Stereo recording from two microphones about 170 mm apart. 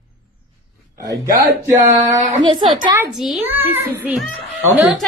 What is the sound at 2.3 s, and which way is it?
Speech, 25° right (ahead or behind).